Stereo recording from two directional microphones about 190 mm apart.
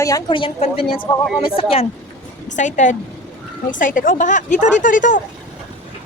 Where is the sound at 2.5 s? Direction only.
40° left (ahead or behind).